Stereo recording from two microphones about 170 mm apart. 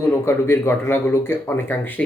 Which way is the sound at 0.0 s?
15° left (ahead or behind).